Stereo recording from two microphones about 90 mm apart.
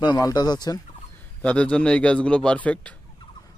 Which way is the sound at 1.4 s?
10° left (ahead or behind).